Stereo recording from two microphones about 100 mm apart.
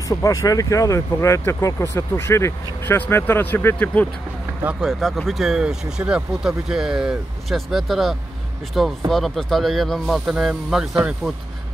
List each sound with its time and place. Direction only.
0.1 s speech: 35° left (ahead or behind); by 4.1 s 15° left (ahead or behind)
4.6 s speech: 5° right (ahead or behind)